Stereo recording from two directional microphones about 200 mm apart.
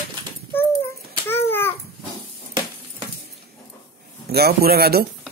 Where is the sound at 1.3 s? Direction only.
10° left (ahead or behind).